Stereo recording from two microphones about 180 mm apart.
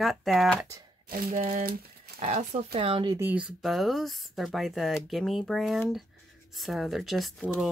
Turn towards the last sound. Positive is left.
turn(degrees=0)  # may be behind; listen again after turning